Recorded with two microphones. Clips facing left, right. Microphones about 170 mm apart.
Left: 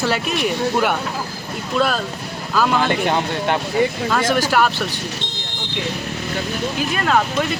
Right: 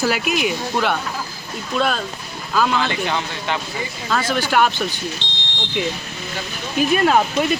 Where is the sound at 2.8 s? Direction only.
50° left (ahead or behind).